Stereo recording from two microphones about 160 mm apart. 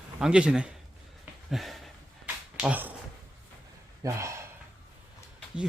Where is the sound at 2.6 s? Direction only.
10° right (ahead or behind).